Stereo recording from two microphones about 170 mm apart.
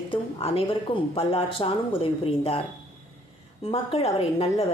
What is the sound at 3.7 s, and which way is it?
Speech, 35° left (ahead or behind).